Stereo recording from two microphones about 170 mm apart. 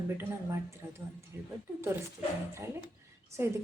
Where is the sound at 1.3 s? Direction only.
15° right (ahead or behind).